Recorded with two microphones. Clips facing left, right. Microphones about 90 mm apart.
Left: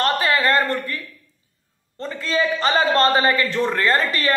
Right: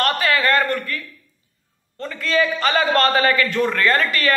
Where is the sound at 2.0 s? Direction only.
30° left (ahead or behind).